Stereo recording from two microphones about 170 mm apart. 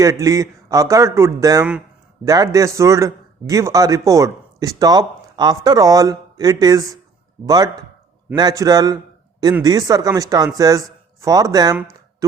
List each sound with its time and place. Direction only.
0.0 s a man's voice: 20° right (ahead or behind)